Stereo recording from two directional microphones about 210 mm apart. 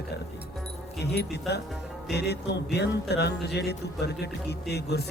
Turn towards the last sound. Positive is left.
turn(degrees=50)  # may be behind; listen again after turning